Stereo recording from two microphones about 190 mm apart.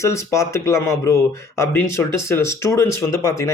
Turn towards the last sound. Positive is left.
turn(degrees=15)  # may be behind; listen again after turning